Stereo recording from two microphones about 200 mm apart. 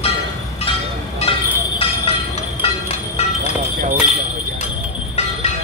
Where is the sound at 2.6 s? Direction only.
30° left (ahead or behind).